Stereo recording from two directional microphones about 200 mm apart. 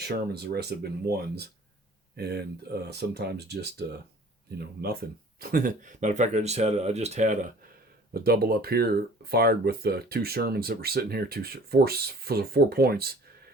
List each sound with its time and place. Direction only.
0.0 s speech: 55° right (ahead or behind); by 7.5 s 35° right (ahead or behind)
8.1 s speech: 50° right (ahead or behind)